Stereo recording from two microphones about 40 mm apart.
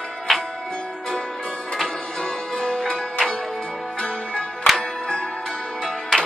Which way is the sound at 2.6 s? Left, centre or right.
Centre.